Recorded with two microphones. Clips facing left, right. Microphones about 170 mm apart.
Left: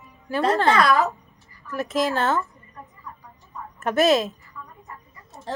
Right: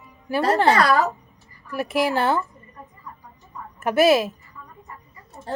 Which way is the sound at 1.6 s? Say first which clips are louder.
Right 1 dB; 10° right (ahead or behind).